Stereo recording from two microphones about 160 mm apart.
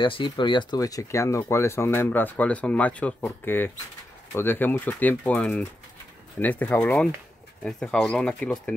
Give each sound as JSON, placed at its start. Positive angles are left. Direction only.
{"t": 0.0, "sound": "speech", "side_deg": 30}